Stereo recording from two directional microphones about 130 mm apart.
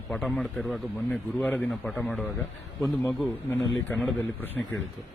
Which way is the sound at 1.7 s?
Centre (ahead or behind).